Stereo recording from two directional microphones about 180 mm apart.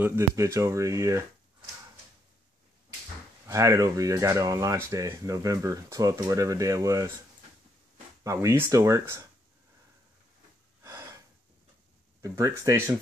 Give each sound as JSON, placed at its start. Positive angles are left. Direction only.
{"t": 0.0, "sound": "speech", "side_deg": -15}
{"t": 3.4, "sound": "speech", "side_deg": -15}
{"t": 8.2, "sound": "speech", "side_deg": -15}
{"t": 10.8, "sound": "gasp", "side_deg": -15}
{"t": 12.2, "sound": "speech", "side_deg": -20}